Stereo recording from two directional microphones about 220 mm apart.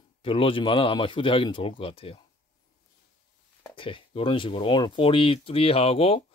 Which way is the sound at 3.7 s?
25° left (ahead or behind).